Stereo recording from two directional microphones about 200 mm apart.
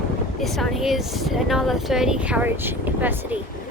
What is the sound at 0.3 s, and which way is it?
Speech, centre (ahead or behind).